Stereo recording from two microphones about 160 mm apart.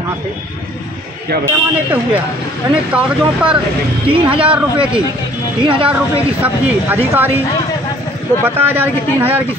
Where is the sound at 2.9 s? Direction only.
5° right (ahead or behind).